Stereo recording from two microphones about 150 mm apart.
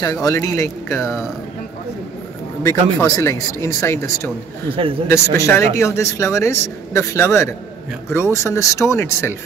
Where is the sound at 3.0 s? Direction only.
20° left (ahead or behind).